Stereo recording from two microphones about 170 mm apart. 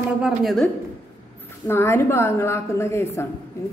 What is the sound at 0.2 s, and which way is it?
Speech, centre (ahead or behind).